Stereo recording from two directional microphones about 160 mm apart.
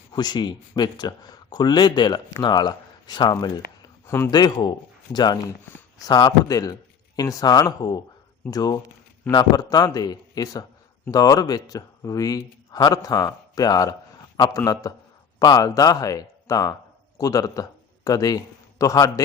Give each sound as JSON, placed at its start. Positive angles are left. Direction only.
{"t": 0.1, "sound": "speech", "side_deg": 25}
{"t": 3.8, "sound": "a sound", "side_deg": 15}
{"t": 4.3, "sound": "a man's voice", "side_deg": 25}